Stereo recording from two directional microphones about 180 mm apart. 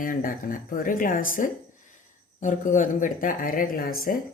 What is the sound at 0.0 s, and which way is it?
Speech, 50° left (ahead or behind).